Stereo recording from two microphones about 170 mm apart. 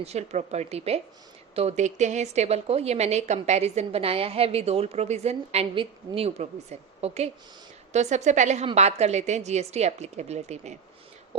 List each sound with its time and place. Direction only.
0.0 s a woman's voice: 40° right (ahead or behind)